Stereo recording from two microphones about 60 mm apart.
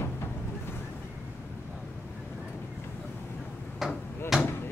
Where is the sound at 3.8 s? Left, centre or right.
Centre.